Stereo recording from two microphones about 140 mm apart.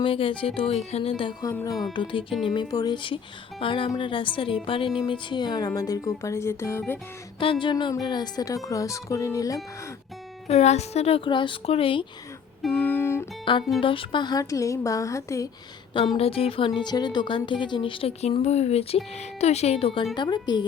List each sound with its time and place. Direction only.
0.0 s a woman's voice: 40° left (ahead or behind); by 7.0 s 15° left (ahead or behind)
7.3 s a woman's voice: 35° left (ahead or behind)
10.5 s a woman's voice: 50° left (ahead or behind)
12.7 s music: 15° left (ahead or behind)
13.4 s a woman's voice: 35° left (ahead or behind)
16.1 s a woman's voice: 45° left (ahead or behind)
20.1 s speech: 30° left (ahead or behind)